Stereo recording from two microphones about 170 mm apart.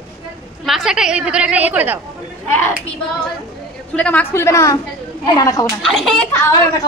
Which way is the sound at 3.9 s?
5° left (ahead or behind).